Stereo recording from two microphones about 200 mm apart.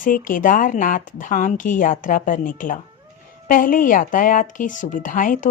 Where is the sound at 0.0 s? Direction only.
40° left (ahead or behind).